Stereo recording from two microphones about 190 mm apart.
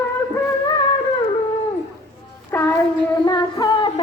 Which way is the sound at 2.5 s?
10° left (ahead or behind).